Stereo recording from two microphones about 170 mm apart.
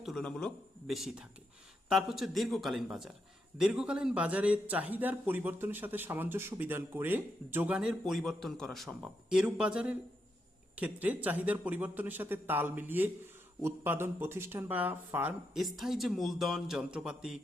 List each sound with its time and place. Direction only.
0.0 s speech: centre (ahead or behind)